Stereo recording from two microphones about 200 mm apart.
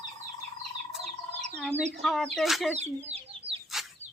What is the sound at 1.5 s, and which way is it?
Chicken, 5° left (ahead or behind).